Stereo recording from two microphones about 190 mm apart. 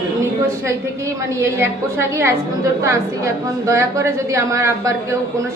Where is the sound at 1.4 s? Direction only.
15° right (ahead or behind).